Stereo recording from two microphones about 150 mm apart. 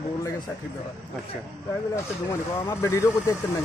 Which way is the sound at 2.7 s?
20° left (ahead or behind).